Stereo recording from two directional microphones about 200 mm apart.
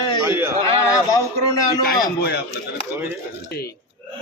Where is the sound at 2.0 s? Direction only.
50° left (ahead or behind).